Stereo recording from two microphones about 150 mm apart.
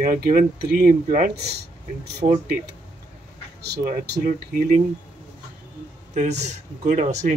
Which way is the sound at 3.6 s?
75° right (ahead or behind).